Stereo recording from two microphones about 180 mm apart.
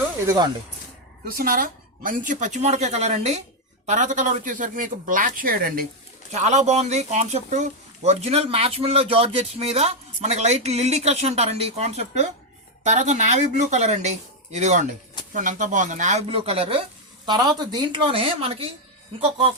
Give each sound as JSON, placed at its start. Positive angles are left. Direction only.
{"t": 1.2, "sound": "a woman's voice", "side_deg": -55}
{"t": 6.3, "sound": "a woman's voice", "side_deg": -40}